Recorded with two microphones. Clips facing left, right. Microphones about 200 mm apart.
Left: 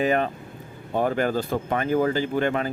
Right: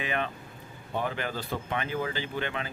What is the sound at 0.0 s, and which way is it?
Speech, 40° left (ahead or behind).